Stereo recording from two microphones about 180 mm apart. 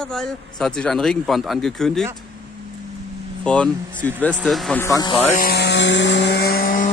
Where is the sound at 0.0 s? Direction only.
5° left (ahead or behind).